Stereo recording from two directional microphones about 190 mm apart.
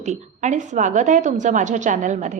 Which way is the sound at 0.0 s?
35° right (ahead or behind).